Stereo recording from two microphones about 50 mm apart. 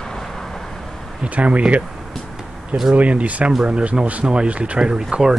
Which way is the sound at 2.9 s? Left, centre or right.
Right.